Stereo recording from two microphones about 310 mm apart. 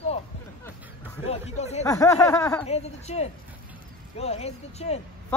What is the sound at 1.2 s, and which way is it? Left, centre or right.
Speech, centre.